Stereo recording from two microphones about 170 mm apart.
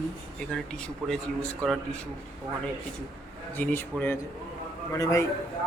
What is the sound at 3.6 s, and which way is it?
A man's voice, 10° left (ahead or behind).